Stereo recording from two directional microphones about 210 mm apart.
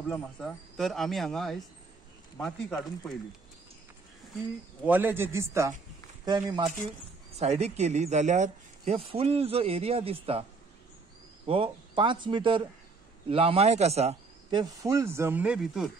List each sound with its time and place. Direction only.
0.1 s speech: 5° left (ahead or behind)
4.8 s speech: 10° right (ahead or behind); by 10.1 s 30° right (ahead or behind)
11.4 s speech: 25° right (ahead or behind)
14.6 s speech: 15° right (ahead or behind)